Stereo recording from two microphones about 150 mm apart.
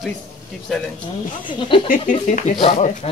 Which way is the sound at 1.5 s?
35° left (ahead or behind).